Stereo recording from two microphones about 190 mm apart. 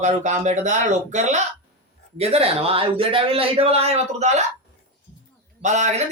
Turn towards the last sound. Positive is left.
turn(degrees=-40)  # may be behind; listen again after turning